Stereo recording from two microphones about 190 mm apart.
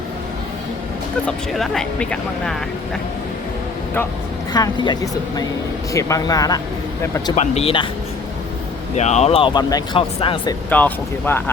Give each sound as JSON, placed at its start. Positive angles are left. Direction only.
{"t": 1.5, "sound": "speech", "side_deg": 0}
{"t": 4.5, "sound": "speech", "side_deg": 20}
{"t": 7.3, "sound": "speech", "side_deg": 35}
{"t": 9.0, "sound": "speech", "side_deg": 35}
{"t": 10.7, "sound": "speech", "side_deg": 10}